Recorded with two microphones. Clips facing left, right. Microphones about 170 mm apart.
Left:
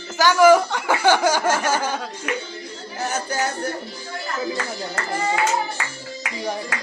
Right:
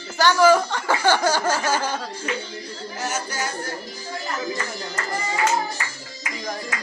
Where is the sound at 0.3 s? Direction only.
10° left (ahead or behind).